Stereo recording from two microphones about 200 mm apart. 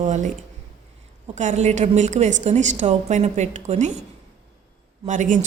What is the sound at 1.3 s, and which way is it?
A woman's voice, 35° right (ahead or behind).